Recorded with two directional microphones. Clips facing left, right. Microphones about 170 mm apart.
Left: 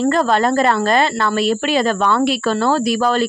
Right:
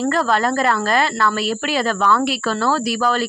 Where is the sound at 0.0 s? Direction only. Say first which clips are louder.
Left 3 dB; 20° left (ahead or behind).